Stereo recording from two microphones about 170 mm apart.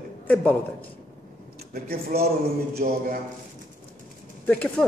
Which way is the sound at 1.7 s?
65° right (ahead or behind).